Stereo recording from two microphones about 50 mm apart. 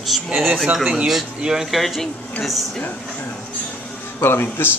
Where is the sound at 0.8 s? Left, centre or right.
Centre.